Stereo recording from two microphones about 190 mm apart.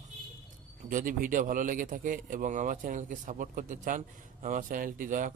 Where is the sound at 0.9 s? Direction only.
45° right (ahead or behind).